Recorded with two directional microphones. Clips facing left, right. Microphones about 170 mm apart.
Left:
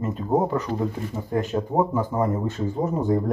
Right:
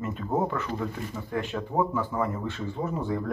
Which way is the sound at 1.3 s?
40° left (ahead or behind).